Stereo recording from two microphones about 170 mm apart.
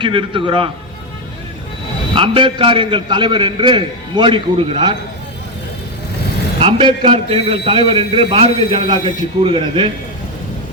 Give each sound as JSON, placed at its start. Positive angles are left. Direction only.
{"t": 0.0, "sound": "a man's voice", "side_deg": -30}
{"t": 2.1, "sound": "a man's voice", "side_deg": -30}
{"t": 6.6, "sound": "a man's voice", "side_deg": -30}